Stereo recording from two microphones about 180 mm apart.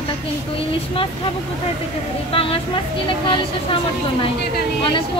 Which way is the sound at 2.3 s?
30° left (ahead or behind).